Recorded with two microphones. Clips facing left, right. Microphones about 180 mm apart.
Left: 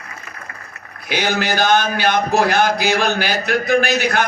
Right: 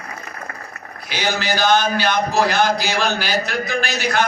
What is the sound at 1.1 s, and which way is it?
A man's voice, 55° left (ahead or behind).